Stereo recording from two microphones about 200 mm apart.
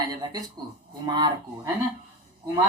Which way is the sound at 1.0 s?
20° right (ahead or behind).